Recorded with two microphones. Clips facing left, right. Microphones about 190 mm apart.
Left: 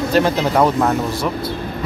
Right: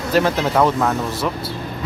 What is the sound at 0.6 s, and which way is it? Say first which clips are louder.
Speech: left 2 dB; 10° left (ahead or behind).